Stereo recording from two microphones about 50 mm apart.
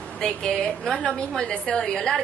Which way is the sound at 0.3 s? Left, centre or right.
Centre.